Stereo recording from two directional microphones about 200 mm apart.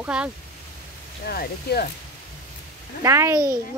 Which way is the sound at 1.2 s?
50° left (ahead or behind).